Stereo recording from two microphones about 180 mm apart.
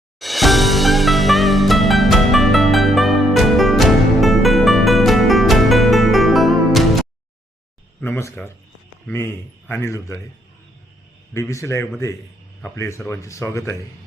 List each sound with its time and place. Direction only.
0.2 s music: centre (ahead or behind)
8.0 s a man's voice: 10° left (ahead or behind)
11.3 s a man's voice: 15° left (ahead or behind)